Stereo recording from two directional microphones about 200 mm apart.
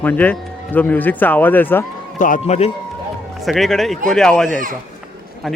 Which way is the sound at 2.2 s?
35° left (ahead or behind).